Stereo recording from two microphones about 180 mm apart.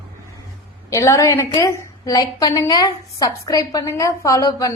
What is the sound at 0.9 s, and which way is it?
A woman's voice, 15° left (ahead or behind).